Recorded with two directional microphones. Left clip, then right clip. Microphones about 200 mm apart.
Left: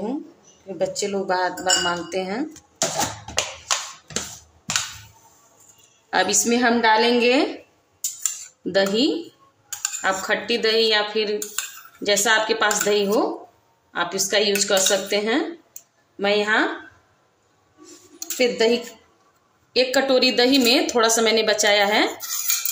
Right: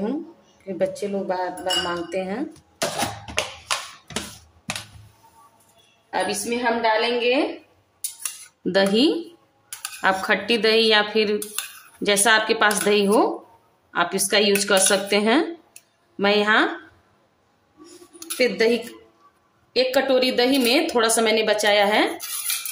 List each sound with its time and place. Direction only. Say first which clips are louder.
0.7 s a woman's voice: even; 5° left (ahead or behind)
1.0 s speech: left 3 dB; 15° left (ahead or behind)
3.3 s a sound: left 1 dB; 10° right (ahead or behind)
6.3 s a woman's voice: left 4 dB; 35° left (ahead or behind)
8.2 s cutlery: left 3 dB; 10° right (ahead or behind)
10.0 s speech: right 2 dB; 15° right (ahead or behind)
18.4 s a woman's voice: even; centre (ahead or behind)